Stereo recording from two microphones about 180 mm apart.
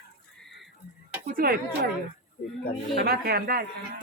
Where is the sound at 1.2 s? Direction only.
55° right (ahead or behind).